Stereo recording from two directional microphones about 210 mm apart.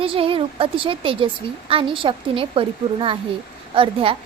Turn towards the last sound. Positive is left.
turn(degrees=-25)  # may be behind; listen again after turning